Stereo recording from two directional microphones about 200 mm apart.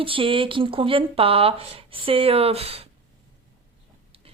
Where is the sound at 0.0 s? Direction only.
25° right (ahead or behind).